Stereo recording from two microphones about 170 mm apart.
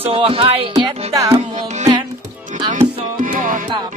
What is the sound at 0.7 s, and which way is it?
Music, 20° right (ahead or behind).